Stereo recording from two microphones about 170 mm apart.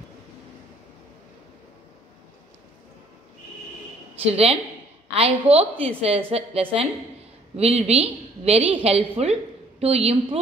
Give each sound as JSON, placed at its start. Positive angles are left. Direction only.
{"t": 4.2, "sound": "a woman's voice", "side_deg": -35}